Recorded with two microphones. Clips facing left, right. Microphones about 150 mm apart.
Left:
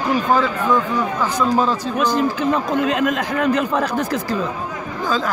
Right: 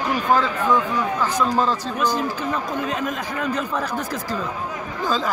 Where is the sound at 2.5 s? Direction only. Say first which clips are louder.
Left 6 dB; 90° left.